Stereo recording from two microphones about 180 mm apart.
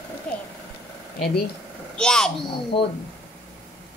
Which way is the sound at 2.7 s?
30° left (ahead or behind).